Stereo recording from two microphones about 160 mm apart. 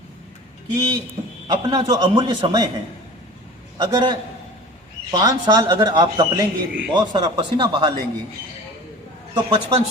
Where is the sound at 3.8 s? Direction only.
25° right (ahead or behind).